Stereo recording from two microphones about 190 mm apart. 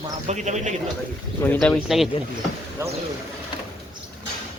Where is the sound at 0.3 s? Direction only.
40° right (ahead or behind).